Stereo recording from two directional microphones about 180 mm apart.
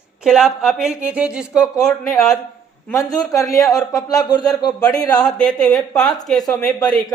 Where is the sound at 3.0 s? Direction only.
20° left (ahead or behind).